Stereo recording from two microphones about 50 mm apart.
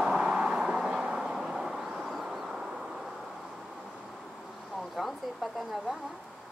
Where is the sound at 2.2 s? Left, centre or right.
Centre.